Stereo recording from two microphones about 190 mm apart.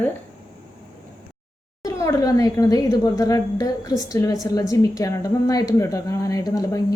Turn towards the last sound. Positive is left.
turn(degrees=20)  # may be behind; listen again after turning